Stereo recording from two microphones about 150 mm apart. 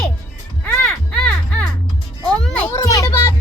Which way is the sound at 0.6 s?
10° left (ahead or behind).